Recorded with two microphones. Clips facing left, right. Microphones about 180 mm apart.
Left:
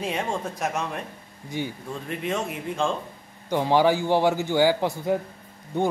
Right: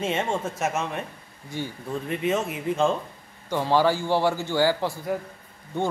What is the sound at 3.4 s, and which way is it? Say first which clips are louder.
A man's voice: left 1 dB; 15° left (ahead or behind).